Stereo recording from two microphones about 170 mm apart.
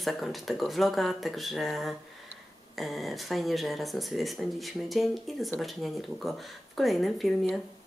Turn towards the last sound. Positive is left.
turn(degrees=0)  # may be behind; listen again after turning